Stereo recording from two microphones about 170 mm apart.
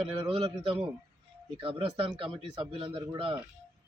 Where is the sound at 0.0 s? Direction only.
30° right (ahead or behind).